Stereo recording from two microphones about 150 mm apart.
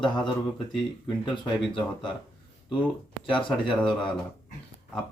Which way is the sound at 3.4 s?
35° left (ahead or behind).